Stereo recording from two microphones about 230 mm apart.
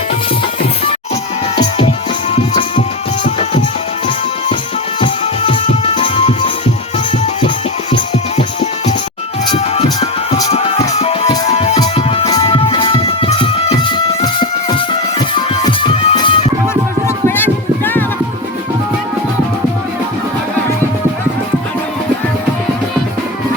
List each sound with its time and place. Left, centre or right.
2.3 s music: left
4.9 s music: left
9.5 s music: left
17.2 s music: centre